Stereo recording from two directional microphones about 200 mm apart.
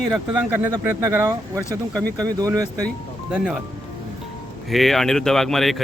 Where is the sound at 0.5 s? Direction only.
10° right (ahead or behind).